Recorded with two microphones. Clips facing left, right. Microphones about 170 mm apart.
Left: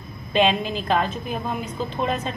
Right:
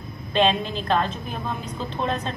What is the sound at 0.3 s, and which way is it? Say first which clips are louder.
A woman's voice: left 1 dB; 5° left (ahead or behind).